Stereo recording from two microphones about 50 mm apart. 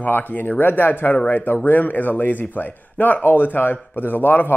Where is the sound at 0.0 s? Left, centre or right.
Left.